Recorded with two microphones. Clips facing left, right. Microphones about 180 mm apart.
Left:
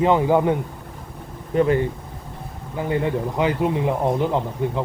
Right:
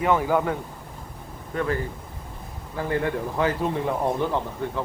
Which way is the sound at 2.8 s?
20° left (ahead or behind).